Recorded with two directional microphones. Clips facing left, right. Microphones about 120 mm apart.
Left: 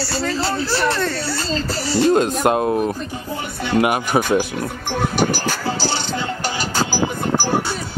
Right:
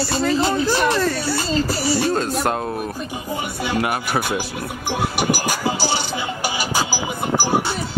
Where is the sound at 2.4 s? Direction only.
20° left (ahead or behind).